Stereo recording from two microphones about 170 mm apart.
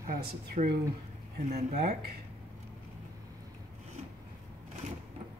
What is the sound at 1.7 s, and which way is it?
Speech, 60° right (ahead or behind).